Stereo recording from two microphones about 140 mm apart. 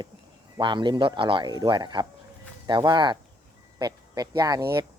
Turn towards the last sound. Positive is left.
turn(degrees=-25)  # may be behind; listen again after turning